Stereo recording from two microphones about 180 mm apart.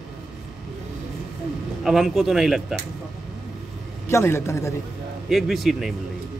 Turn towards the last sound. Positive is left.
turn(degrees=0)  # may be behind; listen again after turning